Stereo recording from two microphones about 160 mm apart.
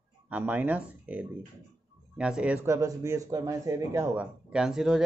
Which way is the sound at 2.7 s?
20° right (ahead or behind).